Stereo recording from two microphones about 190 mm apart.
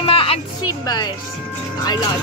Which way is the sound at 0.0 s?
30° left (ahead or behind).